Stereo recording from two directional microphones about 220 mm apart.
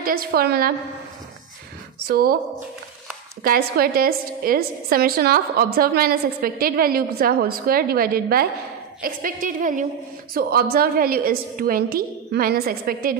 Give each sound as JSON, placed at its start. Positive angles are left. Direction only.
{"t": 0.0, "sound": "a woman's voice", "side_deg": -40}
{"t": 2.0, "sound": "a woman's voice", "side_deg": -45}
{"t": 3.4, "sound": "a woman's voice", "side_deg": -45}